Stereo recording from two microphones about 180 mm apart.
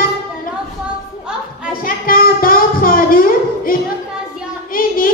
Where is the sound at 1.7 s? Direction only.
55° left (ahead or behind).